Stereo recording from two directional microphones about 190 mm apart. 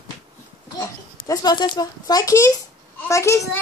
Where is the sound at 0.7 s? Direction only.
20° left (ahead or behind).